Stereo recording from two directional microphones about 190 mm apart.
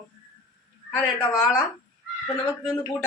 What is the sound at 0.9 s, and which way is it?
Speech, 10° left (ahead or behind).